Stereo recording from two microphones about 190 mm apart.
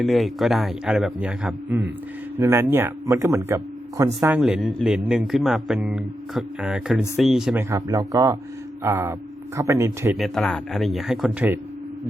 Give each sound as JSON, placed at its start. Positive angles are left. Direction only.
{"t": 0.0, "sound": "speech", "side_deg": 0}
{"t": 4.2, "sound": "speech", "side_deg": -5}
{"t": 7.7, "sound": "speech", "side_deg": -15}
{"t": 10.2, "sound": "speech", "side_deg": 0}